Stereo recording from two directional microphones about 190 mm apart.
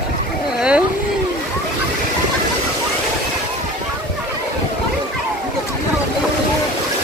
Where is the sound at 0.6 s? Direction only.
5° right (ahead or behind).